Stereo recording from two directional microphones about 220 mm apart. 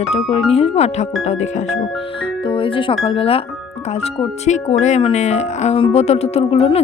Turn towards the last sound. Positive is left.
turn(degrees=30)  # may be behind; listen again after turning